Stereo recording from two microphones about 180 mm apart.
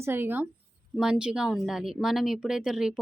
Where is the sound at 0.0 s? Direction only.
10° right (ahead or behind).